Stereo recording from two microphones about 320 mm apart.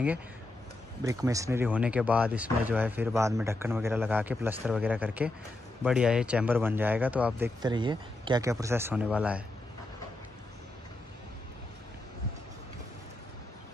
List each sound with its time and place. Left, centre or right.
1.0 s speech: centre